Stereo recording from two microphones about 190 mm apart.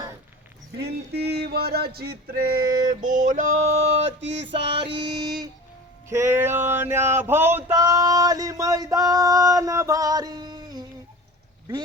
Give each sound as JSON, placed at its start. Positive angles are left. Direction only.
{"t": 0.8, "sound": "a sound", "side_deg": -60}
{"t": 4.2, "sound": "music", "side_deg": -70}
{"t": 4.7, "sound": "music", "side_deg": -25}
{"t": 6.1, "sound": "male singing", "side_deg": -15}